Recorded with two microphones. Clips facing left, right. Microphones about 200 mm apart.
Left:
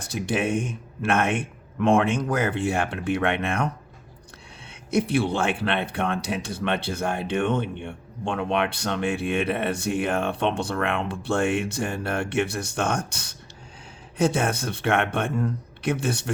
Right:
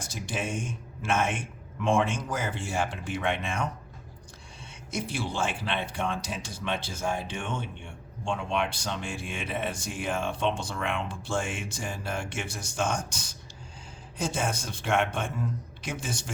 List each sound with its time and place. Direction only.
0.0 s speech: 60° left (ahead or behind)
4.7 s speech: 60° left (ahead or behind)